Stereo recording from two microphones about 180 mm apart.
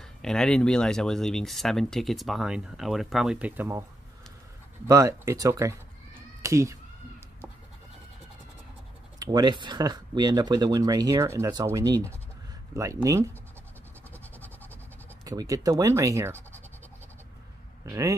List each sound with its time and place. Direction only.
0.0 s speech: 5° left (ahead or behind); by 3.8 s 10° right (ahead or behind)
4.8 s speech: 20° right (ahead or behind)
9.2 s speech: 25° right (ahead or behind)
15.2 s speech: 20° right (ahead or behind)
17.8 s speech: 15° right (ahead or behind)